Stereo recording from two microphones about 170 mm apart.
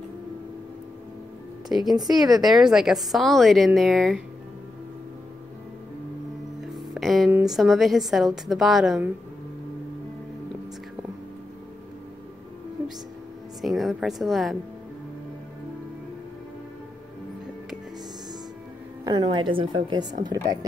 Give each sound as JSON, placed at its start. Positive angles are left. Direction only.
{"t": 1.8, "sound": "a woman's voice", "side_deg": -25}
{"t": 2.4, "sound": "a woman's voice", "side_deg": 0}
{"t": 6.9, "sound": "a sound", "side_deg": 0}
{"t": 7.3, "sound": "a woman's voice", "side_deg": 0}
{"t": 13.6, "sound": "a woman's voice", "side_deg": 0}
{"t": 19.0, "sound": "a woman's voice", "side_deg": -25}